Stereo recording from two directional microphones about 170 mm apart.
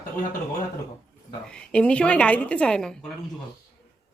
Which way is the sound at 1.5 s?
5° left (ahead or behind).